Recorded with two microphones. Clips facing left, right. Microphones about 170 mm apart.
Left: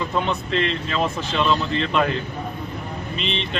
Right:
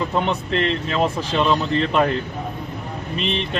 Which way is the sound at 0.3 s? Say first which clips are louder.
Right 2 dB; 35° right (ahead or behind).